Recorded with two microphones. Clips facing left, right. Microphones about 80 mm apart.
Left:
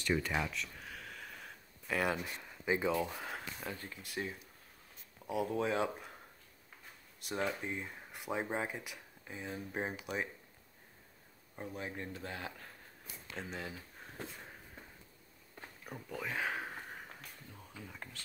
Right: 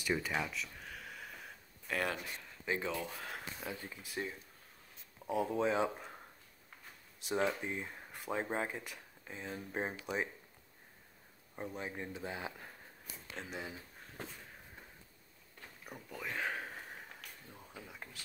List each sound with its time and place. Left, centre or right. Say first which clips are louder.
0.0 s a sound: left 1 dB; centre
2.6 s speech: left 5 dB; centre
7.2 s speech: right 3 dB; centre
11.6 s speech: even; centre
15.8 s speech: left 3 dB; centre
17.9 s a sound: left 1 dB; centre